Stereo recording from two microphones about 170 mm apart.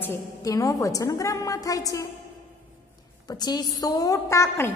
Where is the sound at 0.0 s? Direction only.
20° left (ahead or behind).